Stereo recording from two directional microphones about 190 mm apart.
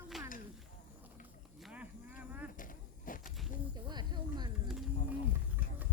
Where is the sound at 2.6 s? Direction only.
45° left (ahead or behind).